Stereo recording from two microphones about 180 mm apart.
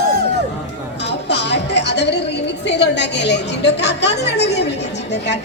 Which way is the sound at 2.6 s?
70° left (ahead or behind).